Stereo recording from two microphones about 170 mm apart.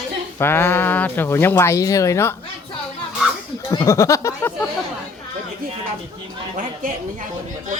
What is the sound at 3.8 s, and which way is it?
Speech, 15° left (ahead or behind).